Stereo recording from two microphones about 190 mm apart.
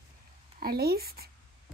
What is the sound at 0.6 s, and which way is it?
Speech, 55° right (ahead or behind).